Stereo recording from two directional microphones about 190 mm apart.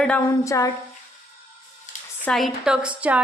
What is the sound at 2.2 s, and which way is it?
A woman's voice, centre (ahead or behind).